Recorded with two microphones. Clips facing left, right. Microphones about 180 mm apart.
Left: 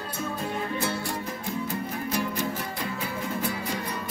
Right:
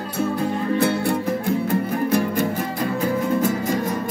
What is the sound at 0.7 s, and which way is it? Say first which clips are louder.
Music: right 10 dB; 60° right (ahead or behind).